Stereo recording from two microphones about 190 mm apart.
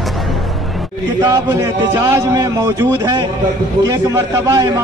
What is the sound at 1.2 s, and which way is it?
A man's voice, 20° right (ahead or behind).